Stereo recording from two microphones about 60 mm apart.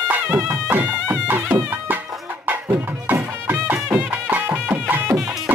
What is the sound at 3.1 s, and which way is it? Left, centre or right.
Music, right.